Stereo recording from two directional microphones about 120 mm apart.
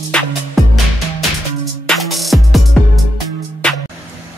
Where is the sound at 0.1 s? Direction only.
10° left (ahead or behind).